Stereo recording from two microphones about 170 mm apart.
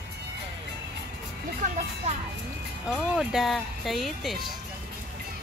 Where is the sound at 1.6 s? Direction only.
50° right (ahead or behind).